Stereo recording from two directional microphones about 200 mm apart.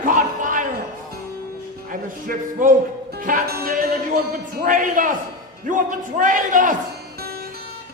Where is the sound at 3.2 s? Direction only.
45° right (ahead or behind).